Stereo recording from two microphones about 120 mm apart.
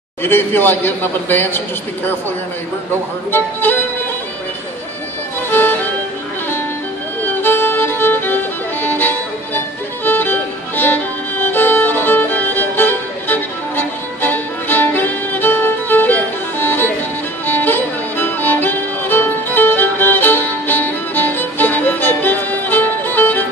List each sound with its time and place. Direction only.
0.2 s a man's voice: 20° left (ahead or behind)
3.3 s a man's voice: 15° left (ahead or behind)
5.5 s music: 15° left (ahead or behind)
7.2 s music: 20° left (ahead or behind)
10.0 s violin: 15° left (ahead or behind)
17.5 s music: 15° left (ahead or behind)